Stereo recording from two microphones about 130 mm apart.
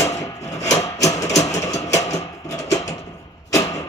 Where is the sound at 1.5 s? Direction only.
25° left (ahead or behind).